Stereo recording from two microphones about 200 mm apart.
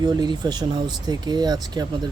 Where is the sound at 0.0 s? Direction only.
20° right (ahead or behind).